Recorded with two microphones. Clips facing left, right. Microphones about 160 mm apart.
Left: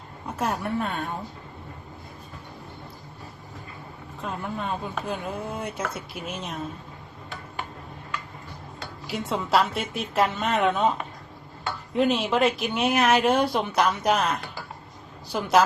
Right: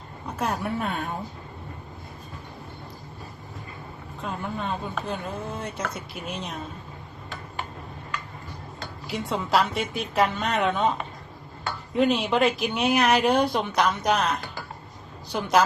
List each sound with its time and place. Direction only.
0.3 s speech: centre (ahead or behind)
4.2 s speech: centre (ahead or behind)
8.8 s speech: centre (ahead or behind)
11.9 s speech: centre (ahead or behind)